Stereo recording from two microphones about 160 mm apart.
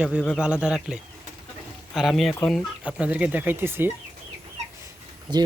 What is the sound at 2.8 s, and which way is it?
Speech, 10° right (ahead or behind).